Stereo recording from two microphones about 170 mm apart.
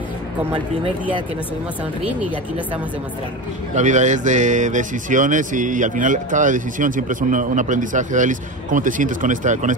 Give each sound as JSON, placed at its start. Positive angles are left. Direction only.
{"t": 3.7, "sound": "speech", "side_deg": -45}